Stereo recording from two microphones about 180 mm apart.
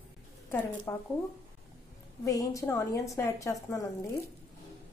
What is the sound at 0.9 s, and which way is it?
Speech, 10° left (ahead or behind).